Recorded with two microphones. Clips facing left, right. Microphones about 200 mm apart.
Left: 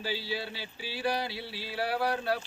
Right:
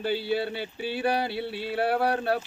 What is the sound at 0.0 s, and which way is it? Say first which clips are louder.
Speech: right 8 dB; 55° right (ahead or behind).